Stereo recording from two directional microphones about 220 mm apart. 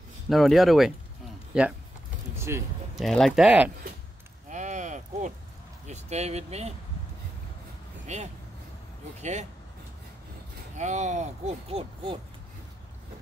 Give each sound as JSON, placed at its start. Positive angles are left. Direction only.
{"t": 0.3, "sound": "speech", "side_deg": 0}
{"t": 2.3, "sound": "vehicle", "side_deg": -10}
{"t": 3.0, "sound": "speech", "side_deg": 0}
{"t": 4.5, "sound": "a sound", "side_deg": -35}
{"t": 5.9, "sound": "speech", "side_deg": -30}
{"t": 9.2, "sound": "speech", "side_deg": -30}
{"t": 10.8, "sound": "speech", "side_deg": -35}